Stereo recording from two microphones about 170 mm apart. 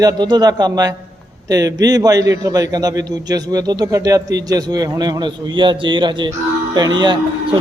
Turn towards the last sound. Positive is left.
turn(degrees=-25)  # may be behind; listen again after turning